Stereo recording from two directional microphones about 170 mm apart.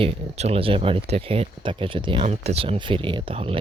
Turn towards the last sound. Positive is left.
turn(degrees=-35)  # may be behind; listen again after turning